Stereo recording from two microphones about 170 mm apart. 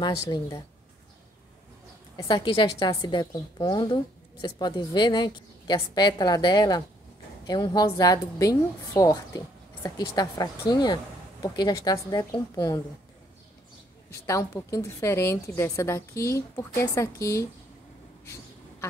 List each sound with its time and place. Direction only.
0.0 s a woman's voice: 25° left (ahead or behind)
2.1 s a woman's voice: 25° left (ahead or behind)
14.2 s a woman's voice: 20° left (ahead or behind)
18.2 s a sound: 15° left (ahead or behind)